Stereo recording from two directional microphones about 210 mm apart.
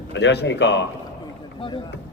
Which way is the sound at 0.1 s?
55° left (ahead or behind).